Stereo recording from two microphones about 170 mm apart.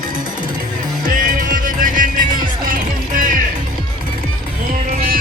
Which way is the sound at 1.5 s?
50° right (ahead or behind).